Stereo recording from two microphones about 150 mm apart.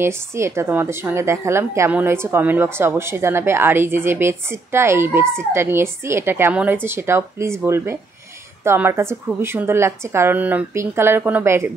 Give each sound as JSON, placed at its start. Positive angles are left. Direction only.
{"t": 0.0, "sound": "speech", "side_deg": -20}